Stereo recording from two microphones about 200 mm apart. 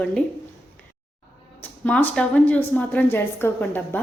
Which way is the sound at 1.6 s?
5° left (ahead or behind).